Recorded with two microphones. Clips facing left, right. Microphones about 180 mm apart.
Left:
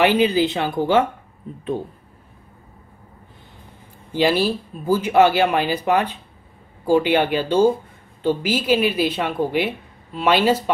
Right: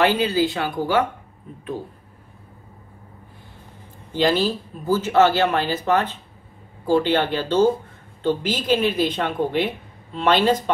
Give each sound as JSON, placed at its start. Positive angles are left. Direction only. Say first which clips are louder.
{"t": 0.0, "sound": "speech", "louder": "left 2 dB", "side_deg": 15}
{"t": 4.1, "sound": "a woman's voice", "louder": "left 1 dB", "side_deg": 10}